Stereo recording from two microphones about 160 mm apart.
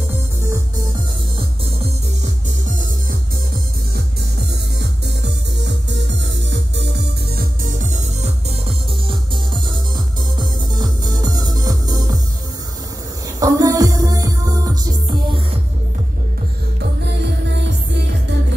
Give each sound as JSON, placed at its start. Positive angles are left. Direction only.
{"t": 4.7, "sound": "music", "side_deg": -90}
{"t": 9.3, "sound": "music", "side_deg": -30}
{"t": 13.4, "sound": "music", "side_deg": -20}
{"t": 17.0, "sound": "music", "side_deg": -90}